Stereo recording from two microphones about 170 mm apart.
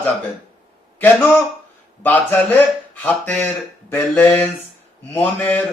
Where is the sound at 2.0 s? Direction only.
10° left (ahead or behind).